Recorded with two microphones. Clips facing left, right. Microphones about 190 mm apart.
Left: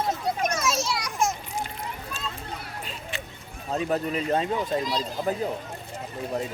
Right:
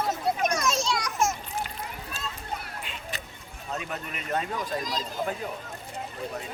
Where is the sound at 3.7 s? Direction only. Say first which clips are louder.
Left 9 dB; 35° left (ahead or behind).